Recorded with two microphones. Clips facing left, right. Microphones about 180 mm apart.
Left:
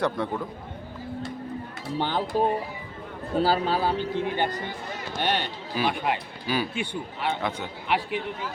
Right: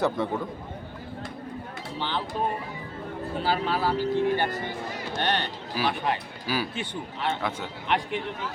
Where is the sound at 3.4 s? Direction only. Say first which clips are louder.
Left 3 dB; 35° left (ahead or behind); by 8.2 s 5° left (ahead or behind).